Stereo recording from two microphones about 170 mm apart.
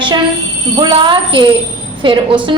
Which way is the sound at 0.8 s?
30° right (ahead or behind).